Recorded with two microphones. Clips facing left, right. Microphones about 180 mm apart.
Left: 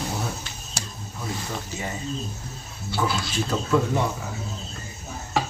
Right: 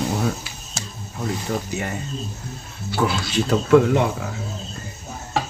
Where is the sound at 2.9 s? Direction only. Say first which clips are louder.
Right 4 dB; 70° right (ahead or behind).